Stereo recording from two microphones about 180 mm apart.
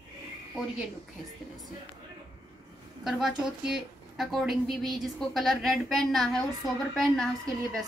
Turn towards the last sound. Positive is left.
turn(degrees=5)  # may be behind; listen again after turning